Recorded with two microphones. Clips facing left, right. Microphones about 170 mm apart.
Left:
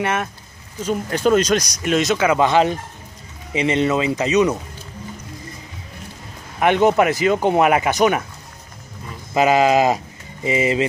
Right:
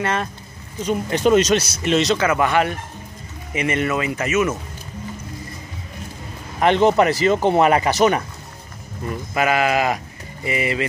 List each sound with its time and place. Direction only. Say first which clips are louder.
0.0 s speech: left 1 dB; 10° left (ahead or behind)
1.1 s speech: right 1 dB; 5° right (ahead or behind)
2.2 s speech: left 3 dB; 20° left (ahead or behind)
6.6 s speech: even; 10° left (ahead or behind)
9.3 s speech: left 4 dB; 25° left (ahead or behind)